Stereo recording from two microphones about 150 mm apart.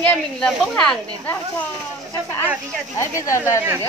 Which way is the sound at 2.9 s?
20° left (ahead or behind).